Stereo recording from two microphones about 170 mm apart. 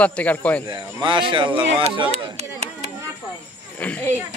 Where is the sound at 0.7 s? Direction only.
30° right (ahead or behind).